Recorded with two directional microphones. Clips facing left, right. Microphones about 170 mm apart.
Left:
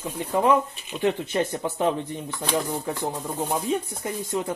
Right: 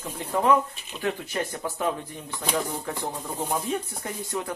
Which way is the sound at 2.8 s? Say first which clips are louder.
Left 3 dB; 15° left (ahead or behind).